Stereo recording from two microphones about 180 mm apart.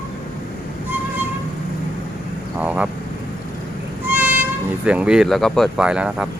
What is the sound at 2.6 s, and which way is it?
Vehicle, 10° right (ahead or behind).